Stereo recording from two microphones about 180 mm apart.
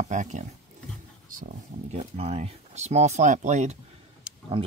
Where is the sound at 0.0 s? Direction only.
45° right (ahead or behind).